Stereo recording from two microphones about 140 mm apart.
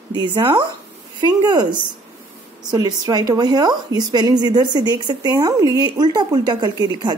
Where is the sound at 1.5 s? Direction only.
30° right (ahead or behind).